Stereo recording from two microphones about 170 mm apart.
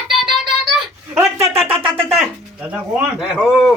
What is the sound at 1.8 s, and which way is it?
Speech, 35° right (ahead or behind).